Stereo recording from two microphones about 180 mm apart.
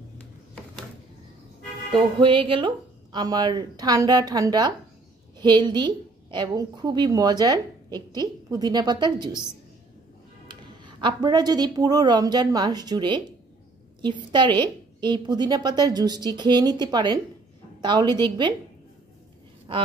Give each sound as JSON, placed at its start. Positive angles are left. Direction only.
{"t": 1.9, "sound": "a woman's voice", "side_deg": -25}
{"t": 10.5, "sound": "a woman's voice", "side_deg": -25}
{"t": 19.7, "sound": "speech", "side_deg": -30}